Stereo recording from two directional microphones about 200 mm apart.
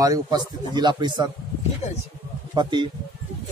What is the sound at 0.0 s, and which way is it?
Speech, 20° right (ahead or behind).